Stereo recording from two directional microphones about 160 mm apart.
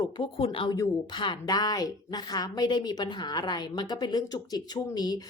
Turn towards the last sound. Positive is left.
turn(degrees=25)  # may be behind; listen again after turning